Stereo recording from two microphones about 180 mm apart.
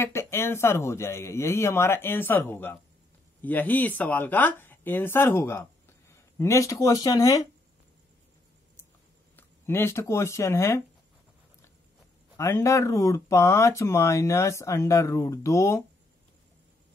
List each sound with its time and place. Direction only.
0.0 s speech: 15° left (ahead or behind)
9.4 s speech: 15° left (ahead or behind)
12.4 s speech: 15° left (ahead or behind)